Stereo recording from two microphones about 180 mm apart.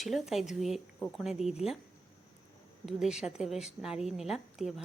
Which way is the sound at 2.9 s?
Centre (ahead or behind).